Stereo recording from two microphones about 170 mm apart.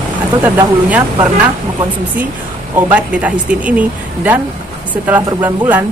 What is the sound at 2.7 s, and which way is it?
Speech, 10° right (ahead or behind).